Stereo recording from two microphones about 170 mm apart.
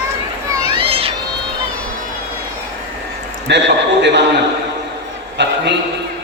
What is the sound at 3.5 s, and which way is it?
Speech, 90° right.